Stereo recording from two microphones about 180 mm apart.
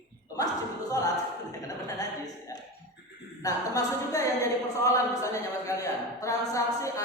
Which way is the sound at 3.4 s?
20° left (ahead or behind).